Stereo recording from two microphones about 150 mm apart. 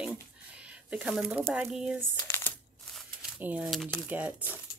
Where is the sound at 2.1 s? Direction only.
15° left (ahead or behind).